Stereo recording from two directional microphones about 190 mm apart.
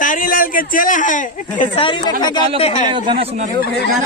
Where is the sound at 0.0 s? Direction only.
45° left (ahead or behind).